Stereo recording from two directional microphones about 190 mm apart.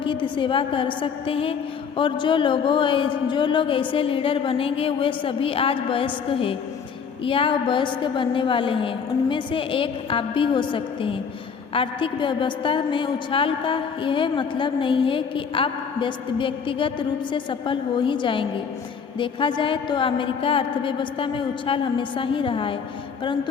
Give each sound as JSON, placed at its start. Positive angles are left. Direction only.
{"t": 0.0, "sound": "a woman's voice", "side_deg": 25}